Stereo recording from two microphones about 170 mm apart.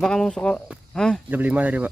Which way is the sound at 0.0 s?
5° left (ahead or behind).